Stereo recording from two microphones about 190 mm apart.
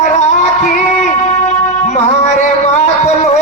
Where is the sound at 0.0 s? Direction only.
40° left (ahead or behind).